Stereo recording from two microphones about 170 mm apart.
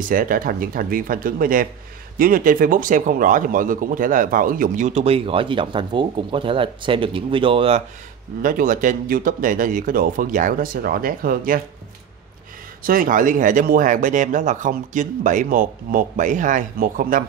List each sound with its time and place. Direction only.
0.0 s speech: 55° right (ahead or behind); by 7.8 s 35° right (ahead or behind)
8.4 s speech: 55° right (ahead or behind)
12.8 s speech: 55° right (ahead or behind)